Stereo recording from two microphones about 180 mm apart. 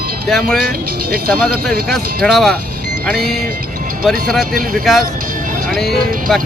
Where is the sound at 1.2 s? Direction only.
55° right (ahead or behind).